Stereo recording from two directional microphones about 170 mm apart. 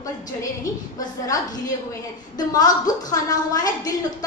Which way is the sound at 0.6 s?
20° left (ahead or behind).